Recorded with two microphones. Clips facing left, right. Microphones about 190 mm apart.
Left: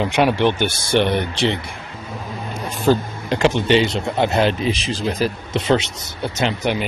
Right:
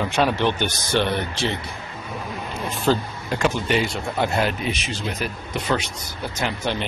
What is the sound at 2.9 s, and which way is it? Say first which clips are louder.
Speech: left 5 dB; 20° left (ahead or behind).